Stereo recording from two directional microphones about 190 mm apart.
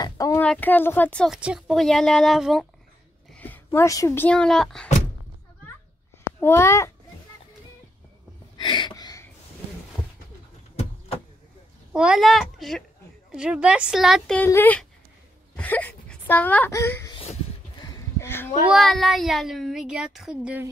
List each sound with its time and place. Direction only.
0.0 s speech: 15° left (ahead or behind)
6.4 s a child's voice: 15° left (ahead or behind)
8.5 s a sound: 25° left (ahead or behind)
11.9 s a woman's voice: 5° right (ahead or behind); by 17.1 s 15° left (ahead or behind)
17.1 s a sound: 25° left (ahead or behind)
18.7 s speech: centre (ahead or behind)